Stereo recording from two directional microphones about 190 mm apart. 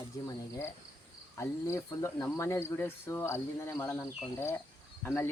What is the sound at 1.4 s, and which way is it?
Speech, 15° left (ahead or behind).